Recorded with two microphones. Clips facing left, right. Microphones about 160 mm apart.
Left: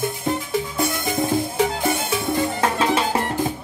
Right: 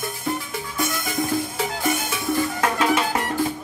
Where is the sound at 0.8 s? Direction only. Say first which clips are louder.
Even; 25° left (ahead or behind).